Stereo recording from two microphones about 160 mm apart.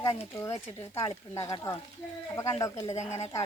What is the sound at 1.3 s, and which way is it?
Speech, 20° left (ahead or behind).